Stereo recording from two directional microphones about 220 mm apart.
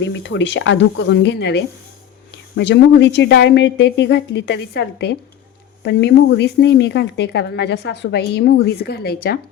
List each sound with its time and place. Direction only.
0.1 s speech: 55° left (ahead or behind)